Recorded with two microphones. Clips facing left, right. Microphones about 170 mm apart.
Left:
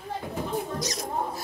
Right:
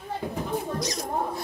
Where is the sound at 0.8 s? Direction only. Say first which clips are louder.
Right 2 dB; centre (ahead or behind).